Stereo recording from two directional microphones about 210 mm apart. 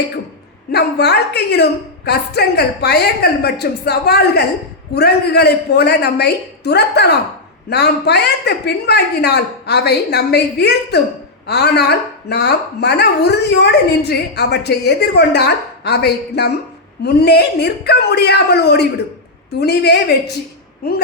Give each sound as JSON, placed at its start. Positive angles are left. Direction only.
{"t": 0.7, "sound": "speech", "side_deg": 50}